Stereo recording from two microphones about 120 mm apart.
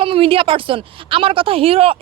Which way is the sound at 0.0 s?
50° right (ahead or behind).